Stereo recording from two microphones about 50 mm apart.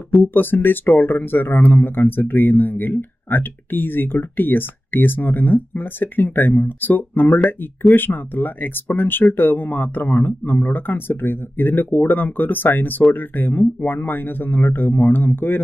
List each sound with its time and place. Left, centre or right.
0.2 s speech: left